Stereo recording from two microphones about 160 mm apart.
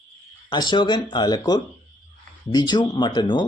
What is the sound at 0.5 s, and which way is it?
Speech, 25° left (ahead or behind).